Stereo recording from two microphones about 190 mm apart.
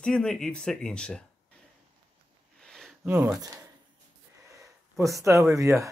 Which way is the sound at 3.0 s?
10° right (ahead or behind).